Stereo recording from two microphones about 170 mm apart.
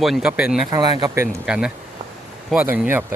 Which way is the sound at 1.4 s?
5° right (ahead or behind).